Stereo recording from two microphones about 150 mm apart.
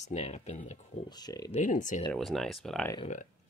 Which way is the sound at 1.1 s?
25° left (ahead or behind).